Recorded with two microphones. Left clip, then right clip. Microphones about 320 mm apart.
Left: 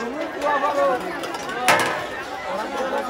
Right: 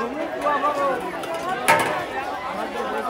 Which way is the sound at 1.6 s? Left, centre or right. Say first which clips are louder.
Left 1 dB; centre.